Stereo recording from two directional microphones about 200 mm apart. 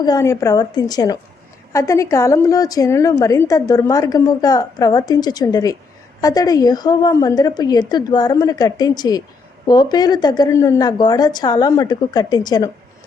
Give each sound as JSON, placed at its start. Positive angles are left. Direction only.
{"t": 0.0, "sound": "a woman's voice", "side_deg": 15}